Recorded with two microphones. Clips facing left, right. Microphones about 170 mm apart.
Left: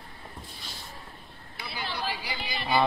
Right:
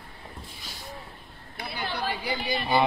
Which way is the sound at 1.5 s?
55° right (ahead or behind).